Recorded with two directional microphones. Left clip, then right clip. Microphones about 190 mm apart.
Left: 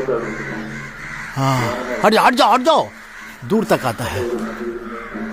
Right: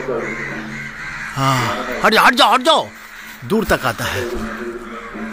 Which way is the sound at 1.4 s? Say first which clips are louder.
Right 2 dB; 15° left (ahead or behind).